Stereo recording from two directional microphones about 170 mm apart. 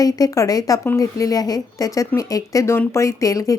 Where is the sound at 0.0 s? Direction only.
20° left (ahead or behind).